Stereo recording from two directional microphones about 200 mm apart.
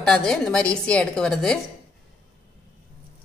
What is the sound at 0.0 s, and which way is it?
Speech, centre (ahead or behind).